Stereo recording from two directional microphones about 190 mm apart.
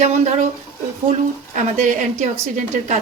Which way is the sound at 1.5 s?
40° right (ahead or behind).